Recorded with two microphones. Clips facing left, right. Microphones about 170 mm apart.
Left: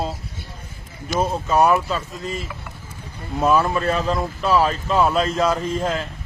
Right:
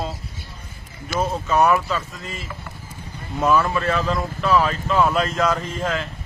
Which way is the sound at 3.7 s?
35° left (ahead or behind).